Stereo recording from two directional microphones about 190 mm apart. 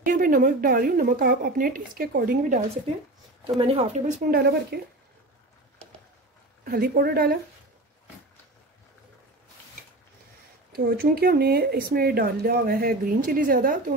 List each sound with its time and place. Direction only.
0.0 s speech: 45° right (ahead or behind)
3.4 s speech: 30° right (ahead or behind)
4.3 s speech: 60° right (ahead or behind)
6.6 s speech: 50° right (ahead or behind)
10.7 s speech: 55° right (ahead or behind)